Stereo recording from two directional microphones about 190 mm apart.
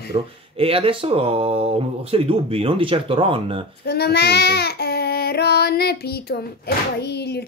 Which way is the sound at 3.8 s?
60° left (ahead or behind).